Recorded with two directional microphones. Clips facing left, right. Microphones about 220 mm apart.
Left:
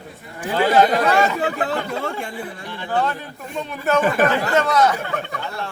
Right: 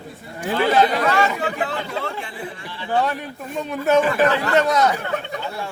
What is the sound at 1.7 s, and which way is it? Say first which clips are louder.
Speech: left 3 dB; 40° left (ahead or behind).